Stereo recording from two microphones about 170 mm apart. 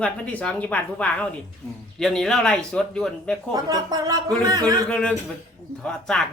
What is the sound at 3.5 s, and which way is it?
A woman's voice, 20° right (ahead or behind).